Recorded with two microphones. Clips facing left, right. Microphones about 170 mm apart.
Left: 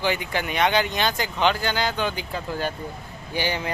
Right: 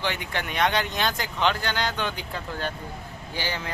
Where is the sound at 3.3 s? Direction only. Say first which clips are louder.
Left 5 dB; 15° left (ahead or behind).